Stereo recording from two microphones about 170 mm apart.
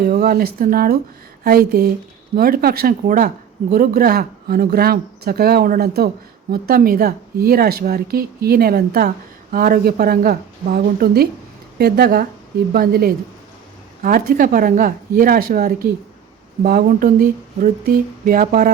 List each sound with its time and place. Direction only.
0.0 s a woman's voice: 65° right (ahead or behind)